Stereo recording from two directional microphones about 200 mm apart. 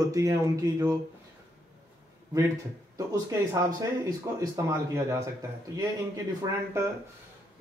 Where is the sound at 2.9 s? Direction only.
15° right (ahead or behind).